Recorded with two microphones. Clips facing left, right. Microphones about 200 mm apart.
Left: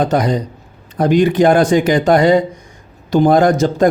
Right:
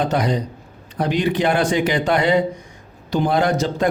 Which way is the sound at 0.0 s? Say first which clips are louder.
Left 5 dB; 45° left (ahead or behind).